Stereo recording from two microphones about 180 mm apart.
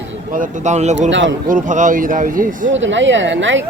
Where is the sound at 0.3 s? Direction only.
40° right (ahead or behind).